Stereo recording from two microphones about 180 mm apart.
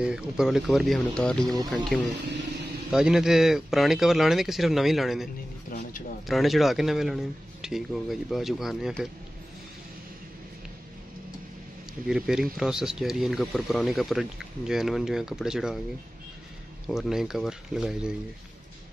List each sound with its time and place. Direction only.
0.0 s speech: 5° right (ahead or behind)
5.7 s a sound: 50° left (ahead or behind)
6.2 s speech: centre (ahead or behind)
12.1 s speech: 5° right (ahead or behind)
16.8 s speech: centre (ahead or behind)